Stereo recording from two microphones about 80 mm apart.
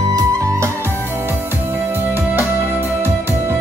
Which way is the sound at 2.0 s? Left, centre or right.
Right.